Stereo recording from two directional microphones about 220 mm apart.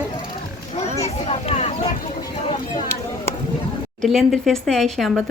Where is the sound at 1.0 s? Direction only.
30° left (ahead or behind).